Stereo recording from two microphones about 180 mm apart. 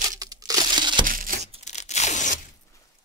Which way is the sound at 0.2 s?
20° right (ahead or behind).